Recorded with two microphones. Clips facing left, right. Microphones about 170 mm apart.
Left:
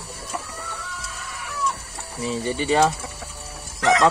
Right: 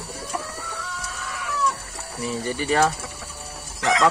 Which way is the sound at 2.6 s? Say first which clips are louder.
Left 2 dB; 20° left (ahead or behind).